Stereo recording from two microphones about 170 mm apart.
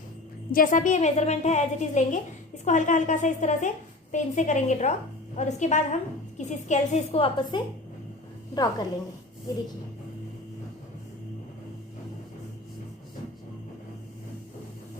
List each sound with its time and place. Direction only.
0.5 s a woman's voice: 50° left (ahead or behind); by 8.9 s 25° left (ahead or behind)